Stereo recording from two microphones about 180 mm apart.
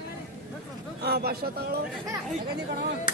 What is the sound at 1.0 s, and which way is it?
Speech, 60° right (ahead or behind).